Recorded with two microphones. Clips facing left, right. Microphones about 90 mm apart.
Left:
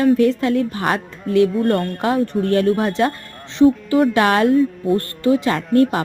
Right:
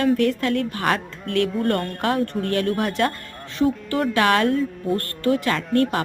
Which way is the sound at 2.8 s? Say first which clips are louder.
Left 4 dB; 20° left (ahead or behind).